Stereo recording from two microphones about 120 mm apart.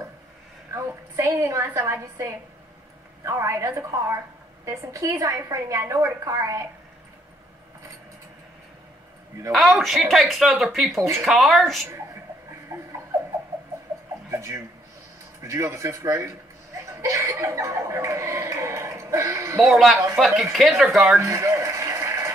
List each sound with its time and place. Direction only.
0.7 s a woman's voice: 25° right (ahead or behind)
9.5 s speech: centre (ahead or behind)
12.7 s a sound: 30° right (ahead or behind)
14.3 s a woman's voice: 25° right (ahead or behind)
19.6 s speech: centre (ahead or behind)
21.2 s a sound: 25° right (ahead or behind)